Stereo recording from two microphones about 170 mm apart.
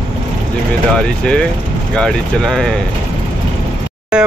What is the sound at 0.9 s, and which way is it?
Speech, 5° left (ahead or behind).